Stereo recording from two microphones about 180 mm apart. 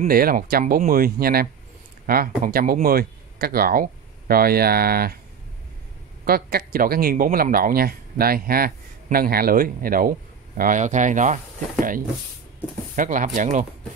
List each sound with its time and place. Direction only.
0.0 s speech: 55° right (ahead or behind)
6.2 s speech: 55° right (ahead or behind)
12.9 s speech: 45° right (ahead or behind)